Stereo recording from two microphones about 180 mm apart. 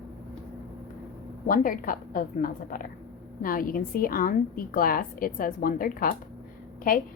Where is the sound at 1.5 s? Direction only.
50° left (ahead or behind).